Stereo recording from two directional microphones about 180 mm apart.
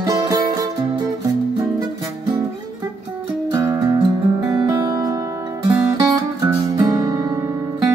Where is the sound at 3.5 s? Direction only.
20° right (ahead or behind).